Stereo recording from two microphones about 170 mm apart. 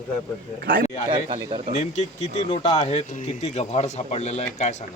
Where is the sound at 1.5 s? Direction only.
40° right (ahead or behind).